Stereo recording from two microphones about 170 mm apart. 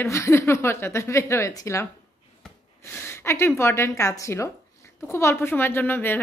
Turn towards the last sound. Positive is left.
turn(degrees=10)  # may be behind; listen again after turning